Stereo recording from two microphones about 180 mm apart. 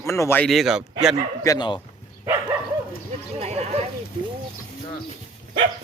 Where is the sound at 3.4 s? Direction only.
35° right (ahead or behind).